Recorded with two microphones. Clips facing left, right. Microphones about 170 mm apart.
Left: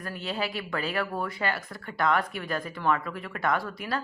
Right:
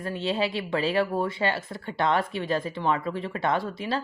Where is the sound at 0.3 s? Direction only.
25° right (ahead or behind).